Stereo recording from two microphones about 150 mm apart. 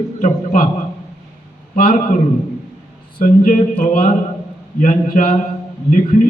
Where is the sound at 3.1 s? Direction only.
65° left (ahead or behind).